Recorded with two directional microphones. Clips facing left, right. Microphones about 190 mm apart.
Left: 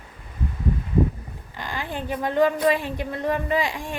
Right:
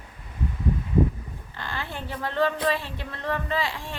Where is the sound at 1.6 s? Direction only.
15° left (ahead or behind).